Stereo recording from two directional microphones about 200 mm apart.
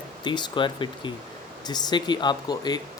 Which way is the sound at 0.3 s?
25° left (ahead or behind).